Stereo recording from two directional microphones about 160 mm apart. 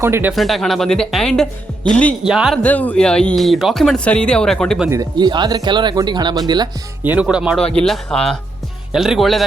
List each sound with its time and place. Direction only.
0.0 s speech: 15° right (ahead or behind)
0.3 s speech: centre (ahead or behind)
2.2 s speech: 5° right (ahead or behind)
2.6 s speech: 10° left (ahead or behind)
4.9 s speech: 25° right (ahead or behind)
7.0 s speech: 10° right (ahead or behind)
7.6 s speech: 5° left (ahead or behind)